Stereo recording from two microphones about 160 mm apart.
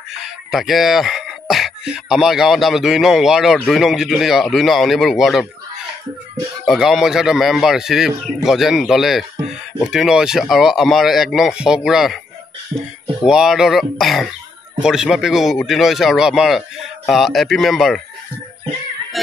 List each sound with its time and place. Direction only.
0.1 s speech: centre (ahead or behind)
6.6 s speech: centre (ahead or behind)
12.7 s speech: 40° right (ahead or behind)
13.2 s speech: 5° right (ahead or behind)